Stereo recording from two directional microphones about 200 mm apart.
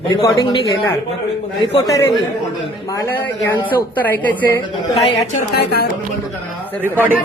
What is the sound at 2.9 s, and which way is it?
A woman's voice, 15° left (ahead or behind).